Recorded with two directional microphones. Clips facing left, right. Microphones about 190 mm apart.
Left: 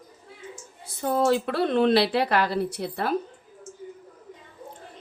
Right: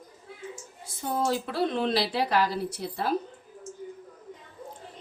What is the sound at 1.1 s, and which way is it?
Speech, 65° left (ahead or behind).